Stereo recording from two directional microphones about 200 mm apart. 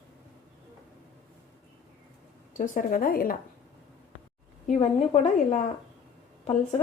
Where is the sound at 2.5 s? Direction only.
40° left (ahead or behind).